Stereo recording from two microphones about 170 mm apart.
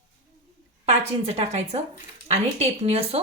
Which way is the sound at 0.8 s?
35° right (ahead or behind).